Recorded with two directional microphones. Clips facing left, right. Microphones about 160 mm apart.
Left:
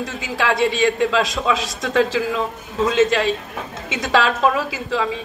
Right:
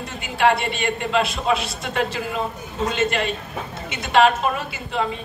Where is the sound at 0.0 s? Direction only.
90° left.